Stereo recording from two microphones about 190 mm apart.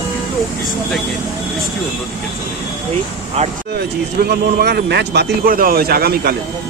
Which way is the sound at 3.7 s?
55° right (ahead or behind).